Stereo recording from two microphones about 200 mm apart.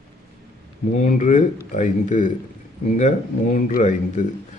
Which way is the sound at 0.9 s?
40° left (ahead or behind).